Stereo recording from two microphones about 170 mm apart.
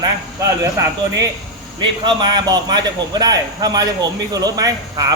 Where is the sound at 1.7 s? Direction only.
25° right (ahead or behind).